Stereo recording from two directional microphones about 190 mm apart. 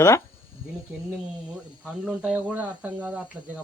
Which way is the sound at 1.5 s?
5° right (ahead or behind).